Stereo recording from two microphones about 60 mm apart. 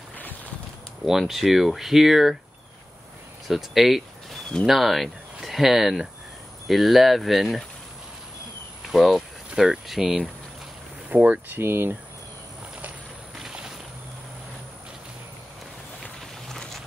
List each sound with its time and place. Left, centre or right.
1.0 s speech: centre
3.4 s speech: centre
8.8 s speech: centre
11.1 s speech: right
11.4 s speech: right
13.4 s a sound: centre
16.4 s a sound: centre